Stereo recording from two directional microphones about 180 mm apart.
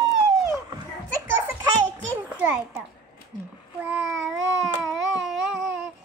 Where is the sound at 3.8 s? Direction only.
5° right (ahead or behind).